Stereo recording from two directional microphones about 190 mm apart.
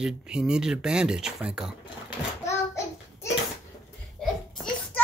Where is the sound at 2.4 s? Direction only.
15° left (ahead or behind).